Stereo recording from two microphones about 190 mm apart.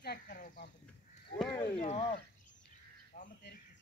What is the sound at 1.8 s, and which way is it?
Speech, 35° left (ahead or behind).